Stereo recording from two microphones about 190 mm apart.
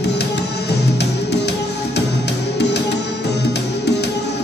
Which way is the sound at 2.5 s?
60° left (ahead or behind).